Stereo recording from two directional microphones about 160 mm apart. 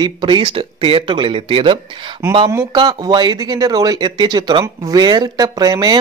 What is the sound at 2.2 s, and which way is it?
Speech, 15° right (ahead or behind).